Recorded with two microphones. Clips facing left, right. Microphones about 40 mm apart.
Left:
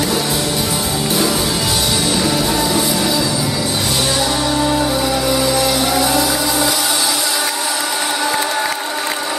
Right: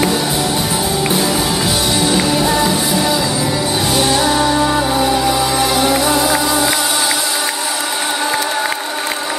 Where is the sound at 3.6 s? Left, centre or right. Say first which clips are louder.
Right 3 dB; right.